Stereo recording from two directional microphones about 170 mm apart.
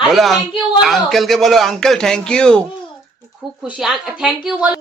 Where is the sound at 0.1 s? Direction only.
Centre (ahead or behind).